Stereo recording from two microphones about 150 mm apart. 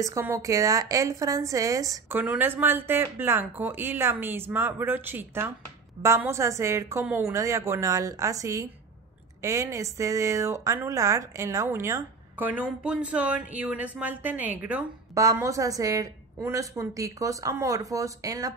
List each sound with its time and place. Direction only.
0.0 s a woman's voice: 20° right (ahead or behind)
2.1 s a woman's voice: 10° right (ahead or behind)
15.1 s a woman's voice: 20° right (ahead or behind)